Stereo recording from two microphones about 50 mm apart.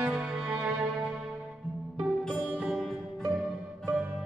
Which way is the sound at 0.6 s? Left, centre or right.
Right.